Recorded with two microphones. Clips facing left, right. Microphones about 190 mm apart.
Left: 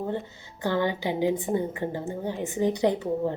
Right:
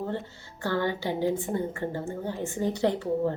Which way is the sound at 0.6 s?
15° left (ahead or behind).